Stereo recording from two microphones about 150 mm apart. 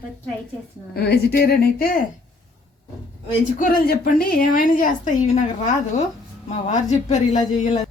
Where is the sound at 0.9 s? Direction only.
90° left.